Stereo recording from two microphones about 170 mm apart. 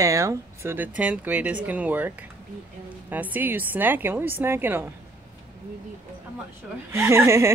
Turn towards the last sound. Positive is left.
turn(degrees=-15)  # may be behind; listen again after turning